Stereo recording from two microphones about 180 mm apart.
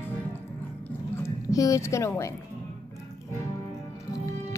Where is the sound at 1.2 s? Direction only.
20° left (ahead or behind).